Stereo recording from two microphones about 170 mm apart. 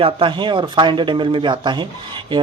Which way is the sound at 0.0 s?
30° right (ahead or behind).